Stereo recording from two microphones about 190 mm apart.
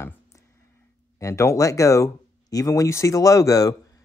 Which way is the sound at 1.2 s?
15° left (ahead or behind).